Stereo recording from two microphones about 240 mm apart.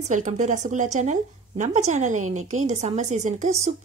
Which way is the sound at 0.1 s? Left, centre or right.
Right.